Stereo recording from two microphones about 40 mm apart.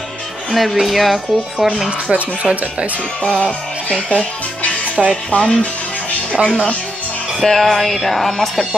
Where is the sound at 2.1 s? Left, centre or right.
Right.